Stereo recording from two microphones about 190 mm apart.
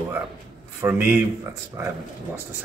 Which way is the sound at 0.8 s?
15° right (ahead or behind).